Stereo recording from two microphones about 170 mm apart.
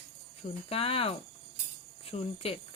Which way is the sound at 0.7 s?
35° left (ahead or behind).